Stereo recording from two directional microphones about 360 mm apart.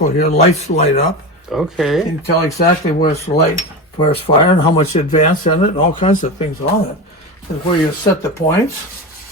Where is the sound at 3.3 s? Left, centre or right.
Centre.